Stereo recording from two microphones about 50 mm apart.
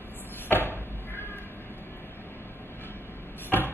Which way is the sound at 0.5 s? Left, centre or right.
Left.